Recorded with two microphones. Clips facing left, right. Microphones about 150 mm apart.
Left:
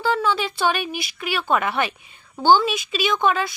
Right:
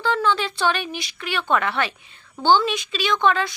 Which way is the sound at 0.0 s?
10° left (ahead or behind).